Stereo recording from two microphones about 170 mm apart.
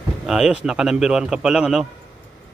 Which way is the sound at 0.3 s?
5° right (ahead or behind).